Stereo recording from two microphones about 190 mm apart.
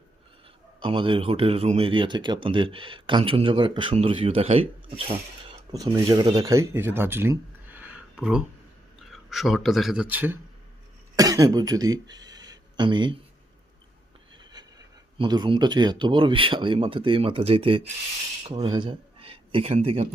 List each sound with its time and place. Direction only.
0.8 s speech: 25° right (ahead or behind)
5.7 s a man's voice: 20° right (ahead or behind)
14.5 s a sound: 20° right (ahead or behind)
15.2 s speech: 25° right (ahead or behind)